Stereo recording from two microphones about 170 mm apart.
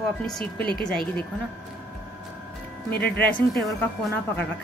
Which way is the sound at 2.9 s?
70° left (ahead or behind).